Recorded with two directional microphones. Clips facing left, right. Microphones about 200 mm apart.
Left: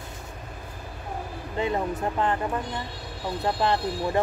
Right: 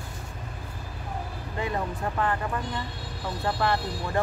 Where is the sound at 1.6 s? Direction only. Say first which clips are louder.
Left 4 dB; 20° left (ahead or behind).